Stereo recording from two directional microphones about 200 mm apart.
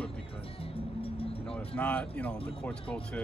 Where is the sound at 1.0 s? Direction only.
25° left (ahead or behind).